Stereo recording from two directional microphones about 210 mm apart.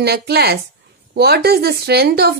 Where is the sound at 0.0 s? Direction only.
50° right (ahead or behind).